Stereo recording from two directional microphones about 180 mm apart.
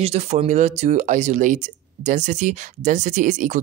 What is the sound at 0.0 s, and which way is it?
Speech, 35° right (ahead or behind).